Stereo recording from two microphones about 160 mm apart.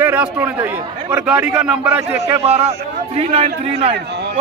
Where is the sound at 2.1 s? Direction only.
40° right (ahead or behind).